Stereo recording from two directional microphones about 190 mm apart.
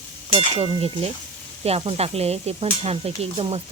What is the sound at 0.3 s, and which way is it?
Speech, 30° right (ahead or behind).